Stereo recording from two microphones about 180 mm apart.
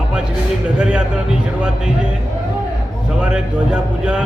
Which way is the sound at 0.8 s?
5° right (ahead or behind).